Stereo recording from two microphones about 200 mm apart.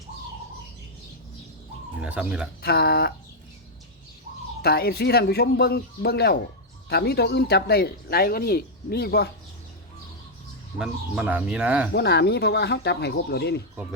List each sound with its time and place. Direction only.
2.0 s speech: 5° right (ahead or behind)
2.6 s speech: 50° left (ahead or behind)
4.6 s speech: 50° left (ahead or behind)
10.8 s speech: 5° right (ahead or behind)
11.9 s speech: 55° left (ahead or behind)